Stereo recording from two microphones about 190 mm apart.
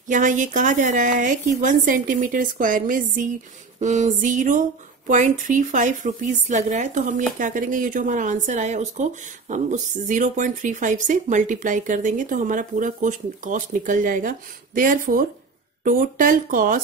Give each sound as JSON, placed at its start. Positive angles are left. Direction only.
{"t": 0.1, "sound": "speech", "side_deg": -40}